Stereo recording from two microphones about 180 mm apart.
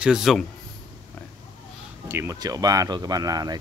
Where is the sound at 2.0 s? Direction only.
15° right (ahead or behind).